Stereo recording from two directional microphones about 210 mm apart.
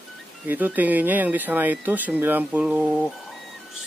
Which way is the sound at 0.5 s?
10° right (ahead or behind).